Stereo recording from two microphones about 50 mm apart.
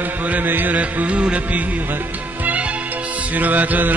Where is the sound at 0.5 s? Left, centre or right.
Right.